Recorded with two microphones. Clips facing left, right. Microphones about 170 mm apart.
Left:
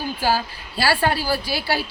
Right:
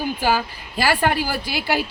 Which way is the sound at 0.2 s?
15° right (ahead or behind).